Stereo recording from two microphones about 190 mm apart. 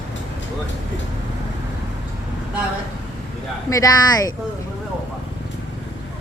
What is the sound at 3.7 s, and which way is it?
Speech, 20° left (ahead or behind).